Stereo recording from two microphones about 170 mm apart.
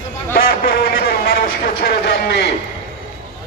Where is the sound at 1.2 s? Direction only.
60° left (ahead or behind).